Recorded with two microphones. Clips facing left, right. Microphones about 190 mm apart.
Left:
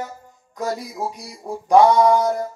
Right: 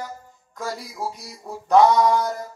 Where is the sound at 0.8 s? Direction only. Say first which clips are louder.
Left 3 dB; 20° left (ahead or behind).